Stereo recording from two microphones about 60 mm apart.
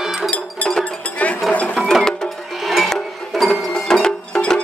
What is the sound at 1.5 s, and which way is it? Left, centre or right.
Music, centre.